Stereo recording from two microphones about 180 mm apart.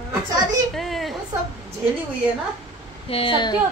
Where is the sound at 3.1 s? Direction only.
30° left (ahead or behind).